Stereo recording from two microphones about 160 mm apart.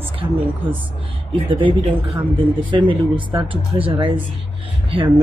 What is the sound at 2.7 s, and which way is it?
Speech, 30° right (ahead or behind).